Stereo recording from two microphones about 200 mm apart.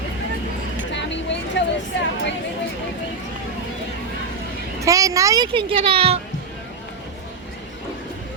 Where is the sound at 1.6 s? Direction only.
65° left (ahead or behind).